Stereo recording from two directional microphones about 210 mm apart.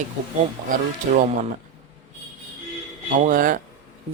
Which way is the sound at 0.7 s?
40° right (ahead or behind).